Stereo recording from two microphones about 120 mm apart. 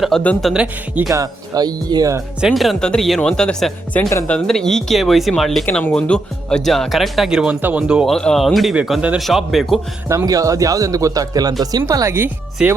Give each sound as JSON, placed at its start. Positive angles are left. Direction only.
{"t": 0.1, "sound": "speech", "side_deg": 0}
{"t": 1.1, "sound": "speech", "side_deg": -30}
{"t": 2.4, "sound": "speech", "side_deg": 0}
{"t": 8.0, "sound": "speech", "side_deg": 5}
{"t": 10.1, "sound": "speech", "side_deg": -30}
{"t": 12.6, "sound": "speech", "side_deg": -5}